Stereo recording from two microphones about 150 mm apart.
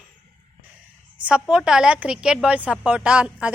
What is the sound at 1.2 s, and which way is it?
A woman's voice, 5° right (ahead or behind).